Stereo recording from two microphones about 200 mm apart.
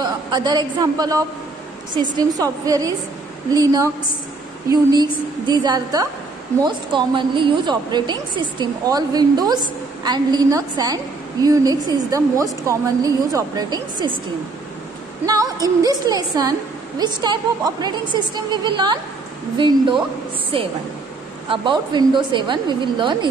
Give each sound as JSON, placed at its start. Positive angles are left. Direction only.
{"t": 0.0, "sound": "a woman's voice", "side_deg": -20}
{"t": 15.2, "sound": "a woman's voice", "side_deg": -20}
{"t": 21.5, "sound": "a woman's voice", "side_deg": -20}